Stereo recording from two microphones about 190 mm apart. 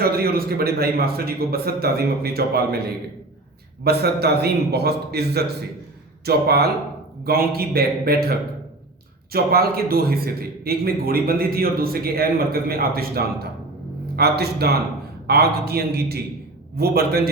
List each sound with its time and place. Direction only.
0.0 s a man's voice: 55° right (ahead or behind)
3.8 s a man's voice: 55° right (ahead or behind)